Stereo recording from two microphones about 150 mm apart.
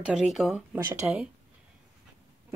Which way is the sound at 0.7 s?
20° right (ahead or behind).